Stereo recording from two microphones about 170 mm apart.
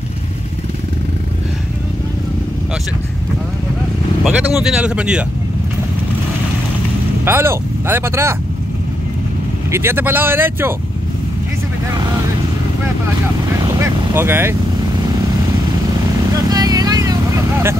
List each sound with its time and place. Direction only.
4.2 s speech: 5° right (ahead or behind)
7.2 s speech: 15° right (ahead or behind)
9.7 s speech: 15° right (ahead or behind)
13.7 s vehicle: 15° right (ahead or behind)
16.3 s vehicle: 20° right (ahead or behind)